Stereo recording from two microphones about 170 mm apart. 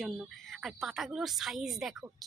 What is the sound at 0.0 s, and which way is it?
Speech, centre (ahead or behind).